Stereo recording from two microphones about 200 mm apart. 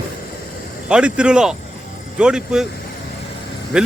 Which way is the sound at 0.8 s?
5° right (ahead or behind).